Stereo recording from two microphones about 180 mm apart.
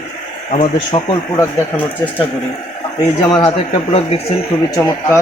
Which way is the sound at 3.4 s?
30° left (ahead or behind).